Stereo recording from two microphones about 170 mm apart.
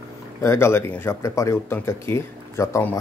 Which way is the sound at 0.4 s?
15° left (ahead or behind).